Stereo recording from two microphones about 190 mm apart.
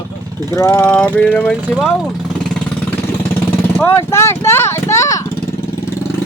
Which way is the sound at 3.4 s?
10° left (ahead or behind).